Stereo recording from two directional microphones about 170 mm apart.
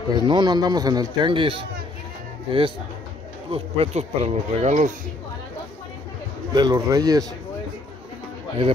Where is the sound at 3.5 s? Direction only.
35° right (ahead or behind).